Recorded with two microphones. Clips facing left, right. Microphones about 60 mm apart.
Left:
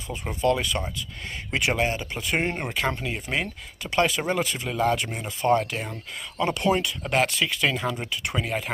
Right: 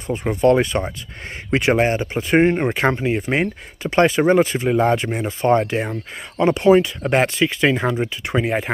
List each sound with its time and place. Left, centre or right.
0.1 s speech: right